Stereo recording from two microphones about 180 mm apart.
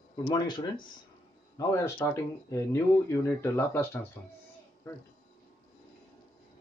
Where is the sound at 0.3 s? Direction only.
25° left (ahead or behind).